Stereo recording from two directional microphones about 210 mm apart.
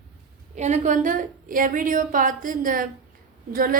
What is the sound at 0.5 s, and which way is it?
A woman's voice, 35° right (ahead or behind).